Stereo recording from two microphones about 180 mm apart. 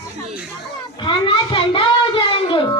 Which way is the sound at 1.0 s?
30° left (ahead or behind).